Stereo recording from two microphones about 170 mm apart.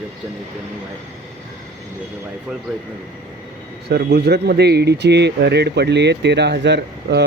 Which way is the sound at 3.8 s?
75° right (ahead or behind).